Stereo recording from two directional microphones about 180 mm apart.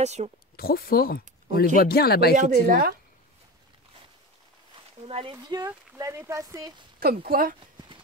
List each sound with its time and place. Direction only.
0.0 s speech: 40° right (ahead or behind)
0.6 s speech: 60° left (ahead or behind)
2.3 s a woman's voice: 50° right (ahead or behind)
5.0 s speech: 30° right (ahead or behind)
7.0 s speech: 55° right (ahead or behind)